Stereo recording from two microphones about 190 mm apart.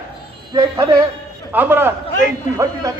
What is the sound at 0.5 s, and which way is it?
Speech, 15° right (ahead or behind).